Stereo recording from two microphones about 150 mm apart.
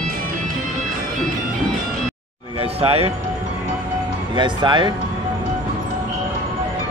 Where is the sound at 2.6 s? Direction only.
40° right (ahead or behind).